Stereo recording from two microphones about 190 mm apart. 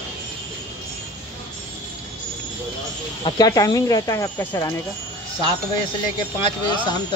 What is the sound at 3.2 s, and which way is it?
Speech, 20° left (ahead or behind).